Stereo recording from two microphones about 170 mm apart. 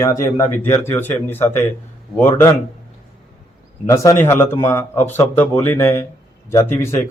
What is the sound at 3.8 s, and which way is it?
Speech, 15° left (ahead or behind).